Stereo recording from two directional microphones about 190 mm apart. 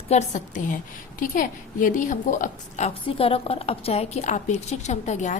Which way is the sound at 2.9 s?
30° left (ahead or behind).